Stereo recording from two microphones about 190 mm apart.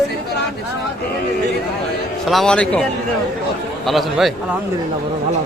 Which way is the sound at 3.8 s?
Centre (ahead or behind).